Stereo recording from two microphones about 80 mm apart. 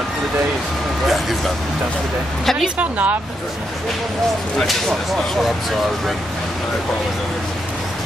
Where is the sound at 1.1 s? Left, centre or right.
Centre.